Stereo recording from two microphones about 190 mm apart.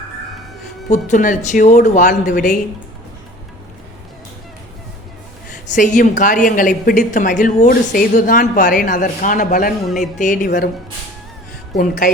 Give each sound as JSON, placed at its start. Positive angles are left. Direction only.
{"t": 0.9, "sound": "speech", "side_deg": 40}
{"t": 5.5, "sound": "a woman's voice", "side_deg": 45}
{"t": 11.8, "sound": "a woman's voice", "side_deg": 45}